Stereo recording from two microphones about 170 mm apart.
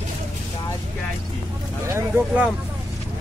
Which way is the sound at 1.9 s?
10° right (ahead or behind).